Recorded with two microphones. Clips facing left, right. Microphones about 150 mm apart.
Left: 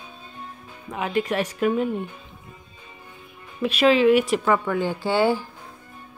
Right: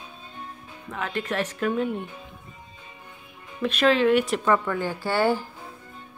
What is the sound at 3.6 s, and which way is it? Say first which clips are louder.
A woman's voice: left 3 dB; 10° left (ahead or behind).